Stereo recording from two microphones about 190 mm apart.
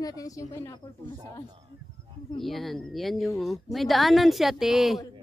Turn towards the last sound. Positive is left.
turn(degrees=0)  # may be behind; listen again after turning